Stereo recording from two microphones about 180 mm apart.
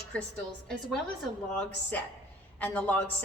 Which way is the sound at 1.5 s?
5° left (ahead or behind).